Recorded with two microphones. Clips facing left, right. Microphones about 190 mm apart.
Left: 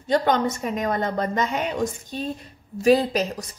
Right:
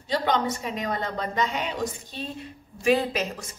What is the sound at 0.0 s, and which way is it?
A woman's voice, 50° left (ahead or behind).